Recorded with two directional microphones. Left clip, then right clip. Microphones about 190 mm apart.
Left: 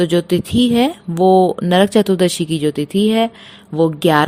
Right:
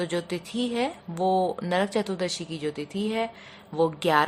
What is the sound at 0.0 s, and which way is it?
Speech, 35° left (ahead or behind).